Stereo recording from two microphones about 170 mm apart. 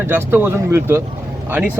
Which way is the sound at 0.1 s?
10° right (ahead or behind).